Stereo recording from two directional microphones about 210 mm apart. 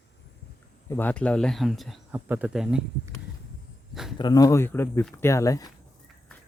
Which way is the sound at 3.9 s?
Centre (ahead or behind).